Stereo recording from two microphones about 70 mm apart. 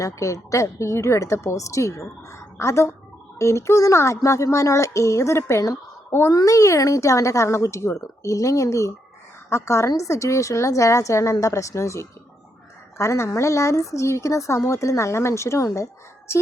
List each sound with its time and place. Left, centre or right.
0.0 s a woman's voice: left